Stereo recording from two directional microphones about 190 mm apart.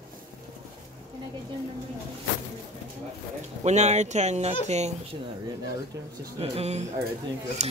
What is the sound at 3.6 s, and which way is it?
Speech, 35° right (ahead or behind).